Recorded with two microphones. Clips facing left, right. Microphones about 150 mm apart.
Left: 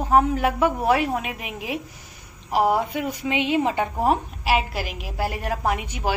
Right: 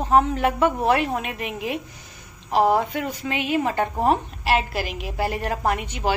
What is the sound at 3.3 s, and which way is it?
A woman's voice, 20° left (ahead or behind).